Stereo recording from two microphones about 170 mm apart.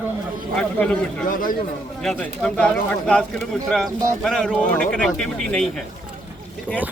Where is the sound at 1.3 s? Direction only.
55° left (ahead or behind).